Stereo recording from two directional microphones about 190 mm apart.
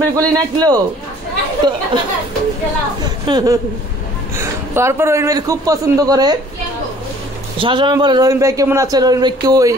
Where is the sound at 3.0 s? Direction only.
20° right (ahead or behind).